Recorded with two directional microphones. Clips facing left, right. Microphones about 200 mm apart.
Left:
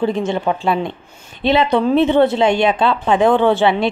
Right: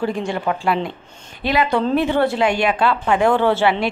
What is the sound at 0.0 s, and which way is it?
Speech, 20° left (ahead or behind).